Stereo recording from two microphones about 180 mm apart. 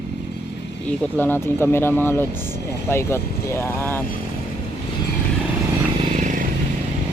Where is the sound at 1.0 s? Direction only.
10° left (ahead or behind).